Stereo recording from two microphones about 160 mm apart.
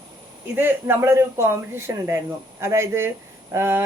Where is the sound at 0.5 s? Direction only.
10° right (ahead or behind).